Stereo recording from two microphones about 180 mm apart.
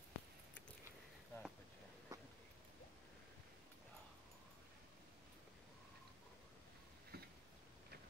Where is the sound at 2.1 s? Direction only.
20° right (ahead or behind).